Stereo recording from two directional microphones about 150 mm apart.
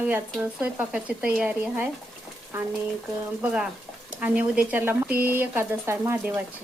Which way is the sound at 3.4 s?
5° right (ahead or behind).